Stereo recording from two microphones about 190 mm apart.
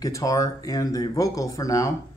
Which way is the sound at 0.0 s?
20° left (ahead or behind).